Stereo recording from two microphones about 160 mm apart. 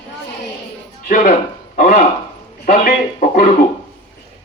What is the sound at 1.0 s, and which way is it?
Speech, 55° left (ahead or behind).